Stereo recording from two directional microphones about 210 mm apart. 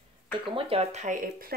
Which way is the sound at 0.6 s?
25° right (ahead or behind).